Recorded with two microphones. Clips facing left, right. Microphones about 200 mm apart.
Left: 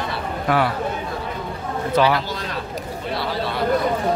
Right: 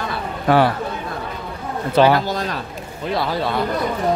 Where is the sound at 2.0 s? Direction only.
45° right (ahead or behind).